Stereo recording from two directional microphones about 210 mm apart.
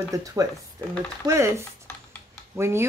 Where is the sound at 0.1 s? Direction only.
15° right (ahead or behind).